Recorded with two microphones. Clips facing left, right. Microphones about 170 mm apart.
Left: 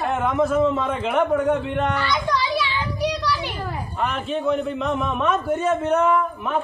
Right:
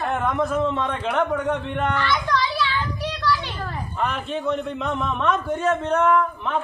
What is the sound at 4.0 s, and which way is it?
A man's voice, centre (ahead or behind).